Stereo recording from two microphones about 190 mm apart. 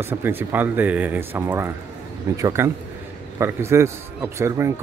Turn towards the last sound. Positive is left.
turn(degrees=-15)  # may be behind; listen again after turning